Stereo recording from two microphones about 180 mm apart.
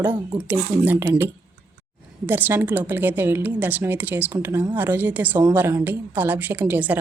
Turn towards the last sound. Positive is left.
turn(degrees=-10)  # may be behind; listen again after turning